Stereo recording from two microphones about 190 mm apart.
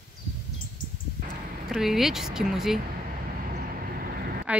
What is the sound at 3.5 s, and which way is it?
Vehicle, 50° right (ahead or behind).